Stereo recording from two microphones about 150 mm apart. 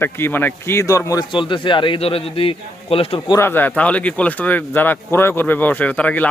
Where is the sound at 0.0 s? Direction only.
15° left (ahead or behind); by 3.2 s 40° left (ahead or behind).